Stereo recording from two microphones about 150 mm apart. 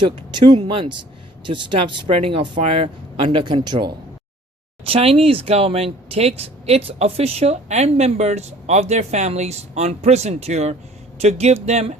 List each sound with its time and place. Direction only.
0.3 s speech: 30° right (ahead or behind)
4.8 s speech: 40° right (ahead or behind)